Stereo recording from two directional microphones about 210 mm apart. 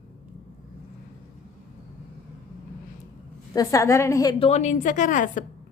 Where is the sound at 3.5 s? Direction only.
15° left (ahead or behind).